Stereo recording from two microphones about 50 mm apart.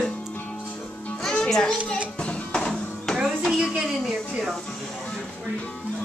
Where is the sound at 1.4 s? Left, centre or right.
Centre.